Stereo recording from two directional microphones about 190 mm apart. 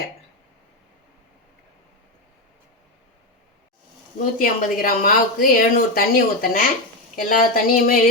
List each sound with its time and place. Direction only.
4.2 s speech: 50° left (ahead or behind)